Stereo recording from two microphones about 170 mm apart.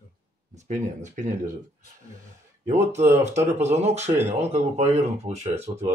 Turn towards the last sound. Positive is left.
turn(degrees=-35)  # may be behind; listen again after turning